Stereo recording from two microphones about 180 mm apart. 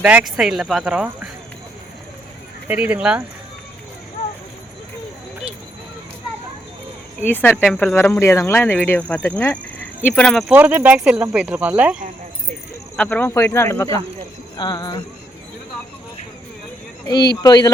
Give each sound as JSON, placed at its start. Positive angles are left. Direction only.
{"t": 0.0, "sound": "speech", "side_deg": -5}
{"t": 2.6, "sound": "speech", "side_deg": -10}
{"t": 7.2, "sound": "speech", "side_deg": 10}
{"t": 10.5, "sound": "speech", "side_deg": -10}
{"t": 13.0, "sound": "speech", "side_deg": 10}
{"t": 17.1, "sound": "speech", "side_deg": 20}